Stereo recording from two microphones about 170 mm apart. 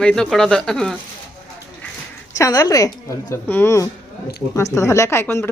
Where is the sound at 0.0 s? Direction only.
5° left (ahead or behind).